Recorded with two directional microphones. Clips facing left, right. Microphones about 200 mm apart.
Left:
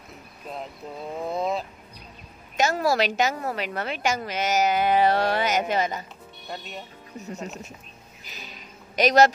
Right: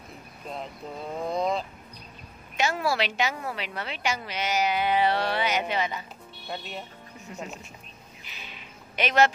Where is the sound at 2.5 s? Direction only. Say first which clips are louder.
Left 4 dB; 40° left (ahead or behind).